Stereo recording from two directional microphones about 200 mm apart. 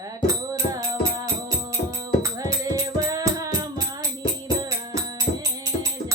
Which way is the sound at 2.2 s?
15° right (ahead or behind).